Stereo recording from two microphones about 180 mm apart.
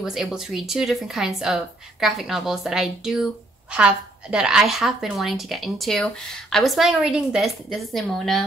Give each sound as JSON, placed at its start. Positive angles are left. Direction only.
{"t": 0.0, "sound": "speech", "side_deg": -5}